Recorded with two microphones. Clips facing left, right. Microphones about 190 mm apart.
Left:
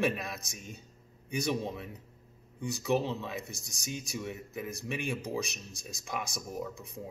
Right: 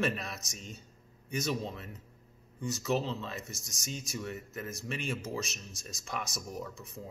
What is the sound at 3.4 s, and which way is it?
Speech, 60° left (ahead or behind).